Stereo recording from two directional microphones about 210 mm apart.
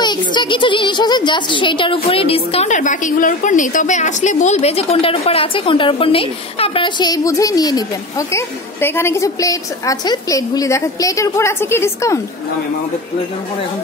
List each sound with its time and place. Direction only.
0.0 s a woman's voice: 20° left (ahead or behind)